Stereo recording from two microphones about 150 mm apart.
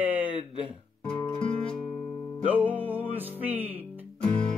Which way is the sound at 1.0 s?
35° left (ahead or behind).